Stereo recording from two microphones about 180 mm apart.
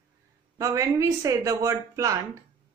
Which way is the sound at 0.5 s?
20° right (ahead or behind).